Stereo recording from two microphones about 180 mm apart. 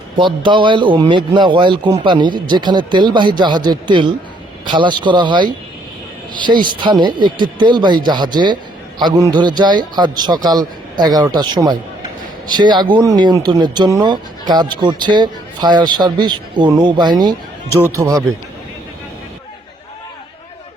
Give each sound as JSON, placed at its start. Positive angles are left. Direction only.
{"t": 0.2, "sound": "a man's voice", "side_deg": -25}